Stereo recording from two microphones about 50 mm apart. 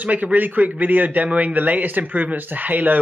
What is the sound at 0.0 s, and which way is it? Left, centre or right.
A man's voice, right.